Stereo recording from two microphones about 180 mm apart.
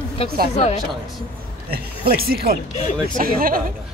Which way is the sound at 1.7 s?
55° right (ahead or behind).